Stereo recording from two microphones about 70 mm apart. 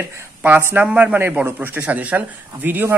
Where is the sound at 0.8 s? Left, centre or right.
Centre.